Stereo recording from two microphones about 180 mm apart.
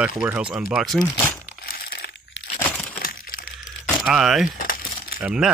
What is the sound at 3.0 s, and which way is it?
Crack, 50° left (ahead or behind).